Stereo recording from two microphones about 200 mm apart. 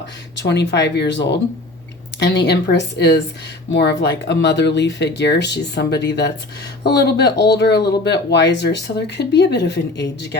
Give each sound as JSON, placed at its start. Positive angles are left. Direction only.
{"t": 0.4, "sound": "speech", "side_deg": 60}